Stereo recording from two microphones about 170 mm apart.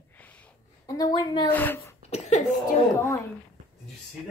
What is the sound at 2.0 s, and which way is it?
Speech, 40° left (ahead or behind).